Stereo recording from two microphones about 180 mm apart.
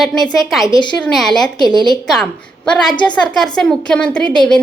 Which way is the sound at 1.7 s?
25° left (ahead or behind).